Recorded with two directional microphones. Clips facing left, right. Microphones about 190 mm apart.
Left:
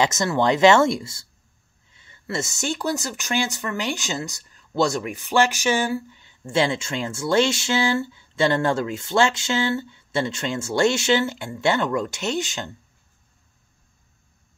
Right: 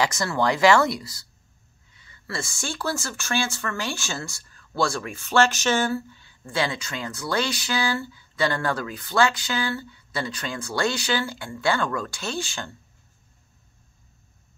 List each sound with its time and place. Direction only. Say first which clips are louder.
0.0 s speech: left 3 dB; 20° left (ahead or behind)